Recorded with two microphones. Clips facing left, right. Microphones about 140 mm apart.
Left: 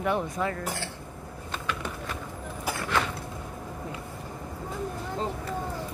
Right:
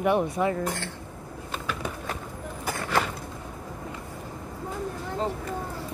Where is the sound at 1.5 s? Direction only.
5° right (ahead or behind).